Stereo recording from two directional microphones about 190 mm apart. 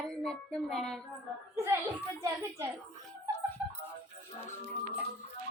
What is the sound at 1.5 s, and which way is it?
A child's voice, 15° right (ahead or behind).